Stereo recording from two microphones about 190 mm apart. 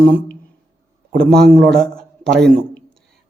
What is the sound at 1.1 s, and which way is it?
Speech, 55° right (ahead or behind).